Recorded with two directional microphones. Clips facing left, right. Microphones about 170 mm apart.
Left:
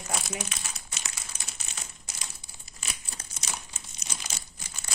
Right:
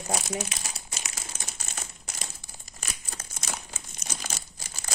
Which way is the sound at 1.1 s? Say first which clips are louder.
Right 4 dB; 45° right (ahead or behind).